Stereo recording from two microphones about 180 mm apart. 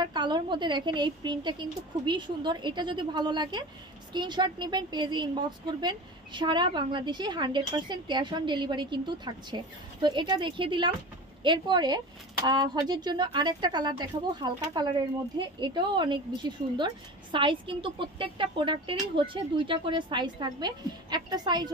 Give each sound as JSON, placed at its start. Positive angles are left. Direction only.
{"t": 0.0, "sound": "a woman's voice", "side_deg": -25}